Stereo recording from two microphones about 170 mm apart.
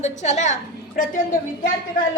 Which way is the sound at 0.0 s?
45° left (ahead or behind).